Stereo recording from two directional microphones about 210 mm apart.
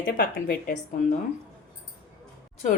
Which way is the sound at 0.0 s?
45° left (ahead or behind).